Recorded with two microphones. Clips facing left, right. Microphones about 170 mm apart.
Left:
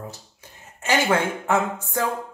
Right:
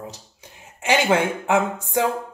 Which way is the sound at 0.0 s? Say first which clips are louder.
Right 1 dB; 15° right (ahead or behind).